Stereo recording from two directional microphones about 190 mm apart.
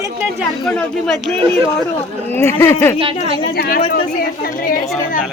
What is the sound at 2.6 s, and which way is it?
Speech, 15° left (ahead or behind).